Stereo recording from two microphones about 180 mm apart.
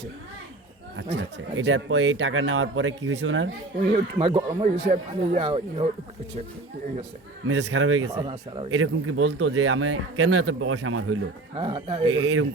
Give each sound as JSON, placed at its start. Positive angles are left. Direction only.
{"t": 1.1, "sound": "speech", "side_deg": -90}
{"t": 3.8, "sound": "speech", "side_deg": -35}
{"t": 7.4, "sound": "speech", "side_deg": -90}
{"t": 8.0, "sound": "speech", "side_deg": -15}
{"t": 8.7, "sound": "speech", "side_deg": -90}
{"t": 11.5, "sound": "speech", "side_deg": -30}